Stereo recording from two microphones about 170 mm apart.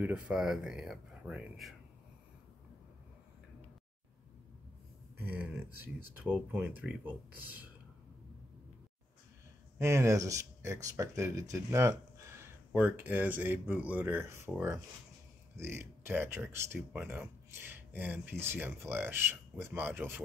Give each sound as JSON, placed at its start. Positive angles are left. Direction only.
{"t": 0.0, "sound": "speech", "side_deg": -5}
{"t": 5.1, "sound": "speech", "side_deg": -10}
{"t": 9.8, "sound": "speech", "side_deg": -15}